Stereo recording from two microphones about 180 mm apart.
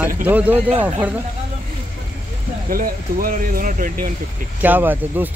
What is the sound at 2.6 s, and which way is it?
Speech, 50° right (ahead or behind).